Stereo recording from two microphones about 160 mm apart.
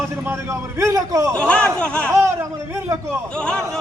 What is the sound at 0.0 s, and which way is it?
Speech, 15° right (ahead or behind).